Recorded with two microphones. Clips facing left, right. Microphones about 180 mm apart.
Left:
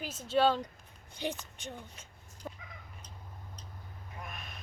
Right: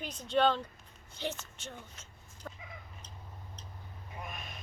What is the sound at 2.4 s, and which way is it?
Fowl, 15° left (ahead or behind).